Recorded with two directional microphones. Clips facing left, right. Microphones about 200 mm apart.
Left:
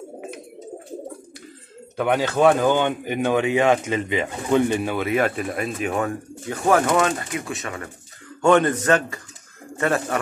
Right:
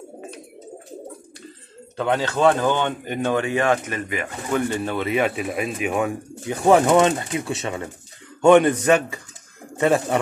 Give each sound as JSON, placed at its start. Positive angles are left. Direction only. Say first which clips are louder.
{"t": 2.0, "sound": "speech", "louder": "left 2 dB", "side_deg": 10}
{"t": 5.1, "sound": "speech", "louder": "right 1 dB", "side_deg": -10}
{"t": 8.4, "sound": "speech", "louder": "right 3 dB", "side_deg": -15}